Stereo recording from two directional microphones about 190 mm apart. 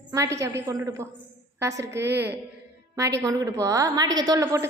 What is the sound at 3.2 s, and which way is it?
A woman's voice, 15° right (ahead or behind).